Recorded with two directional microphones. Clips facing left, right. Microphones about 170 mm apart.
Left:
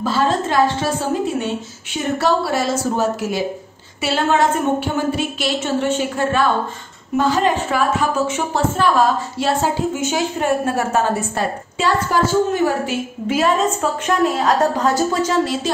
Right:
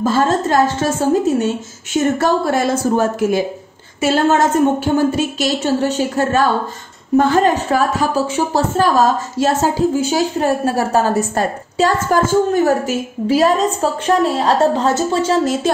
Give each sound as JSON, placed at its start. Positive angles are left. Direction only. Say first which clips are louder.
{"t": 0.0, "sound": "a woman's voice", "louder": "right 3 dB", "side_deg": -45}
{"t": 7.2, "sound": "a woman's voice", "louder": "right 4 dB", "side_deg": -50}